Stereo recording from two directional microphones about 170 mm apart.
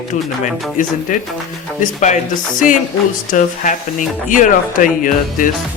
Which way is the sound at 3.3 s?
50° left (ahead or behind).